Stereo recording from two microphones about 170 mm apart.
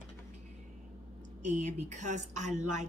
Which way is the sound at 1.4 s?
45° right (ahead or behind).